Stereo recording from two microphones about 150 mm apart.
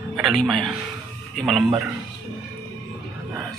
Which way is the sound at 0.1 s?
Centre (ahead or behind).